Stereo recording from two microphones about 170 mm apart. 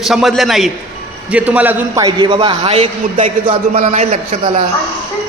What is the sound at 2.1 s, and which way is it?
A man's voice, 30° right (ahead or behind).